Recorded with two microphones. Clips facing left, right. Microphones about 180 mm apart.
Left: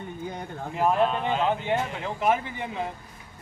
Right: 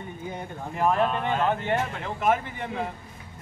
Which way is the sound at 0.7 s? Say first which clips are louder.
Left 1 dB; 5° left (ahead or behind).